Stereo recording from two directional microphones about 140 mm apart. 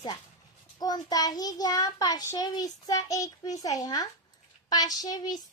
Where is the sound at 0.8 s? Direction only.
30° left (ahead or behind).